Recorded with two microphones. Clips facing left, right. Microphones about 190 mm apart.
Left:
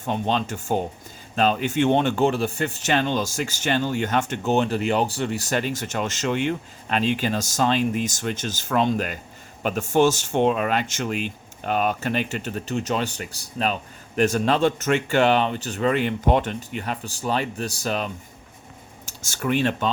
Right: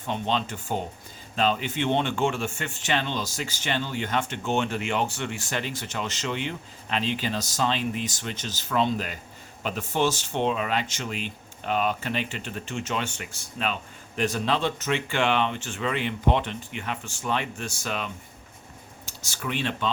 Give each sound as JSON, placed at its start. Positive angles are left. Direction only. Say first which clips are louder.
{"t": 0.0, "sound": "speech", "louder": "left 3 dB", "side_deg": 45}